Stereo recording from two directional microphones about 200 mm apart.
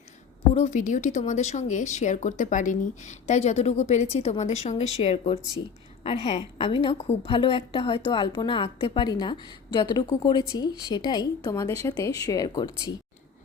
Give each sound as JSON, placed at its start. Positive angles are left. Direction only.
{"t": 0.5, "sound": "a woman's voice", "side_deg": 35}